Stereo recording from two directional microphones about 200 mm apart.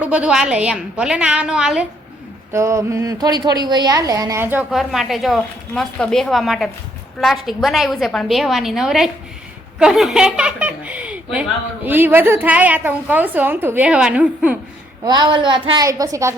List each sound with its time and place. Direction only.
0.0 s a woman's voice: 5° right (ahead or behind)
15.0 s a woman's voice: 20° right (ahead or behind)